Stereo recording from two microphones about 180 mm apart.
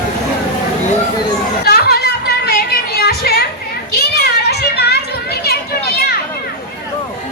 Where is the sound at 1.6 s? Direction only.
60° left (ahead or behind).